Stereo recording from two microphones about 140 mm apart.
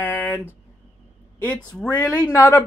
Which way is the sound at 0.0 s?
15° left (ahead or behind).